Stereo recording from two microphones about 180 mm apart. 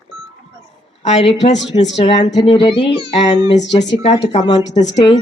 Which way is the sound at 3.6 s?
80° left.